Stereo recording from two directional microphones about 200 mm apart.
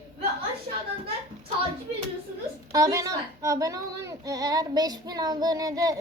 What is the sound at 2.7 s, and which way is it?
Speech, 15° right (ahead or behind).